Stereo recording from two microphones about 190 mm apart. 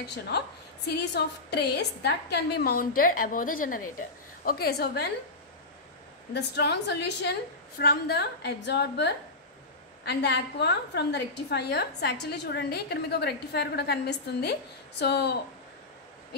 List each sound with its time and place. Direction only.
0.8 s a woman's voice: 60° left (ahead or behind)
6.3 s a woman's voice: 60° left (ahead or behind)